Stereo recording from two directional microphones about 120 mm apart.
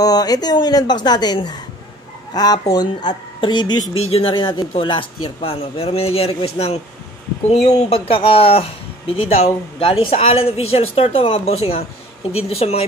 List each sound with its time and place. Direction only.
0.0 s a woman's voice: 30° left (ahead or behind); by 8.0 s 65° left (ahead or behind)
8.1 s speech: 50° left (ahead or behind)
10.0 s a woman's voice: 60° left (ahead or behind)